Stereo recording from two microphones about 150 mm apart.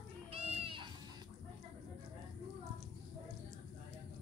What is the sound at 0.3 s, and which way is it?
Cat, 40° right (ahead or behind).